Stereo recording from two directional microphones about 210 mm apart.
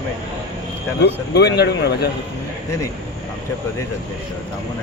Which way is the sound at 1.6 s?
50° left (ahead or behind).